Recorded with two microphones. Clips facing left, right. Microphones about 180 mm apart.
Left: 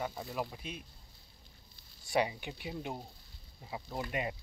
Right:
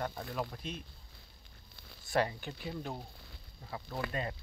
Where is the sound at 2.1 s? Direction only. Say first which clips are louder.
Even; 10° left (ahead or behind).